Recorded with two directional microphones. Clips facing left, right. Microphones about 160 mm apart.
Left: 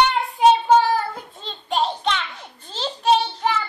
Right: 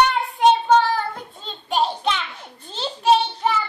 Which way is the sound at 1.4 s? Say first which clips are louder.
Right 1 dB; 5° right (ahead or behind).